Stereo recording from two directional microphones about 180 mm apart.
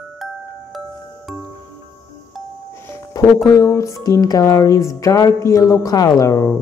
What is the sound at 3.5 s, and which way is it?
Speech, 15° left (ahead or behind).